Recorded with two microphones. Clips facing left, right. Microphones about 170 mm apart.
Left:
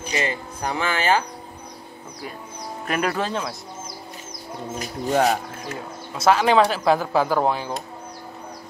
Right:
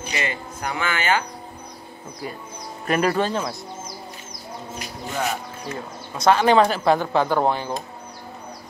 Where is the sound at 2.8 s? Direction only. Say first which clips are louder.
Right 4 dB; centre (ahead or behind).